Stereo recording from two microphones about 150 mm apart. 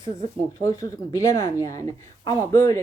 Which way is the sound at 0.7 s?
20° left (ahead or behind).